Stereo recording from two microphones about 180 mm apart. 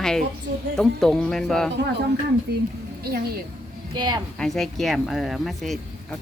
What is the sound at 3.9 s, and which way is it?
Speech, 25° right (ahead or behind).